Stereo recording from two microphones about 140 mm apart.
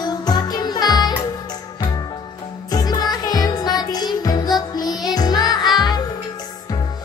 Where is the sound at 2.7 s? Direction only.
25° left (ahead or behind).